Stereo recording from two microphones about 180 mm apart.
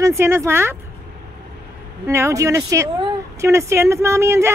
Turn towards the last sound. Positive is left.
turn(degrees=-15)  # may be behind; listen again after turning